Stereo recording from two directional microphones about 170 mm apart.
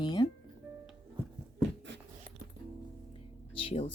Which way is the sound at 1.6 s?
90° right.